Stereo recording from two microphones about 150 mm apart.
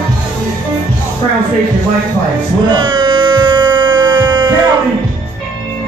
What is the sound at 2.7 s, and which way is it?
Music, 30° right (ahead or behind).